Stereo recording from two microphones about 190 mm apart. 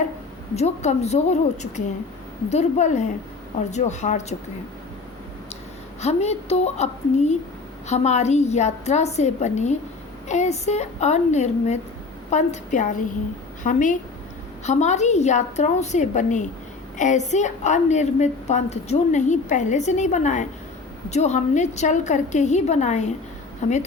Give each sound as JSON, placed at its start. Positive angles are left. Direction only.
{"t": 0.5, "sound": "a woman's voice", "side_deg": 35}
{"t": 6.0, "sound": "a woman's voice", "side_deg": 35}